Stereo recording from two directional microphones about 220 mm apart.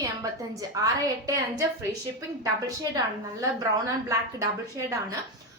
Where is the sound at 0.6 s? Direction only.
15° right (ahead or behind).